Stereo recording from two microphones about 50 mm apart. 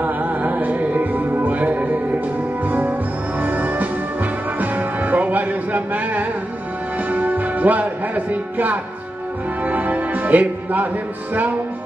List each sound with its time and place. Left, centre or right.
0.0 s music: right